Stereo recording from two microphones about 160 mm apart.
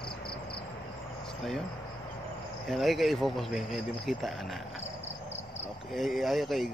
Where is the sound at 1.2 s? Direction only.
Centre (ahead or behind).